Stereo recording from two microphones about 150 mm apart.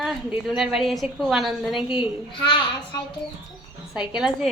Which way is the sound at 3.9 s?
5° right (ahead or behind).